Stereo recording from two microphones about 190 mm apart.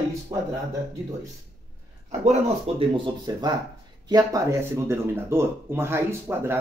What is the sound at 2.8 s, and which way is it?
Speech, 20° right (ahead or behind).